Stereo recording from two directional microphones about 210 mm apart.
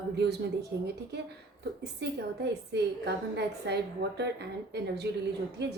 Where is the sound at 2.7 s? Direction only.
50° right (ahead or behind).